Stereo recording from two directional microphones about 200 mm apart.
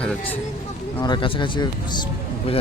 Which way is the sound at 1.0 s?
20° left (ahead or behind).